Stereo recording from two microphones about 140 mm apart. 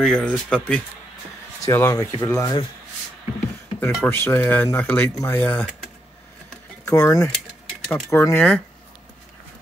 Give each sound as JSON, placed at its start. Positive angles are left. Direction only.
{"t": 0.0, "sound": "speech", "side_deg": 5}
{"t": 1.7, "sound": "speech", "side_deg": 20}
{"t": 3.8, "sound": "speech", "side_deg": 15}
{"t": 6.9, "sound": "speech", "side_deg": 25}